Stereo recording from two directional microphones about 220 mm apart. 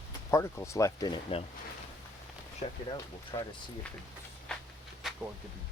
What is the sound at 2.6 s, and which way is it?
Speech, 30° left (ahead or behind).